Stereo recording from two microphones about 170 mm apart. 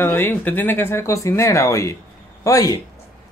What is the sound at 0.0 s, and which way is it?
Speech, 15° left (ahead or behind).